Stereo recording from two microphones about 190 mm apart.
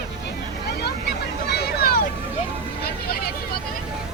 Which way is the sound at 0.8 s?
60° left (ahead or behind).